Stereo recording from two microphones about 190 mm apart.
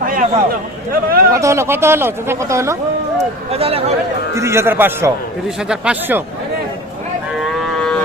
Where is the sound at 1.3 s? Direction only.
15° right (ahead or behind).